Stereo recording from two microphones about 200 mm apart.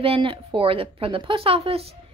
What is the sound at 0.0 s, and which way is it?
Speech, 25° right (ahead or behind).